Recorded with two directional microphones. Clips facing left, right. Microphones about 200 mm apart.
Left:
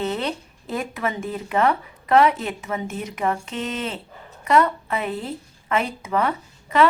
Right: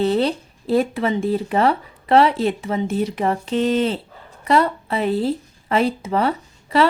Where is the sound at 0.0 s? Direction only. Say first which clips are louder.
Right 7 dB; 30° right (ahead or behind).